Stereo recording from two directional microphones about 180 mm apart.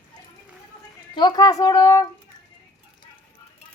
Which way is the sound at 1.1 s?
25° left (ahead or behind).